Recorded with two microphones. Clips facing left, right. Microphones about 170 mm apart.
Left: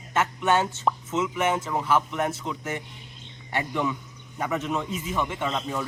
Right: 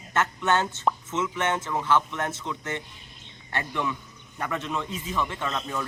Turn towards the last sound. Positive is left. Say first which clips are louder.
# left 2 dB
turn(degrees=15)  # may be behind; listen again after turning